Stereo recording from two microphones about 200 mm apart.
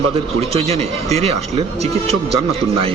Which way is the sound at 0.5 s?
30° right (ahead or behind).